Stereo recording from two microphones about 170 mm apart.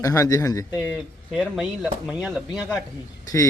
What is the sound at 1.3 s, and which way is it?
Speech, 5° right (ahead or behind).